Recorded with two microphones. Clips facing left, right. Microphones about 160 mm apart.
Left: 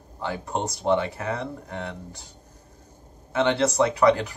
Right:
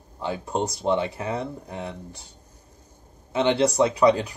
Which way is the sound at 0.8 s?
20° right (ahead or behind).